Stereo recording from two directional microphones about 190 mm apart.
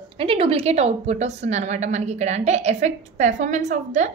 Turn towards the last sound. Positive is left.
turn(degrees=-40)  # may be behind; listen again after turning